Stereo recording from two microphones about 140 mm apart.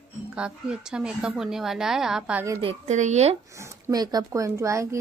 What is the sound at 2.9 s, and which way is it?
Speech, 55° right (ahead or behind).